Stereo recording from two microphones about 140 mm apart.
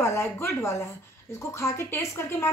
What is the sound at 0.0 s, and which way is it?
A woman's voice, 20° left (ahead or behind).